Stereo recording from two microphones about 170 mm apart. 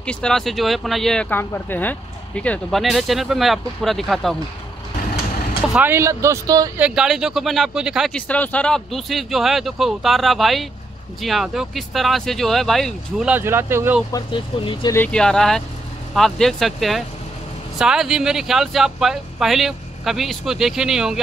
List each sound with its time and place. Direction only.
0.0 s speech: 5° left (ahead or behind)
5.8 s speech: 15° right (ahead or behind)
6.8 s speech: 5° right (ahead or behind)
13.3 s speech: 15° right (ahead or behind)
14.1 s speech: 30° left (ahead or behind)
15.0 s speech: 5° left (ahead or behind)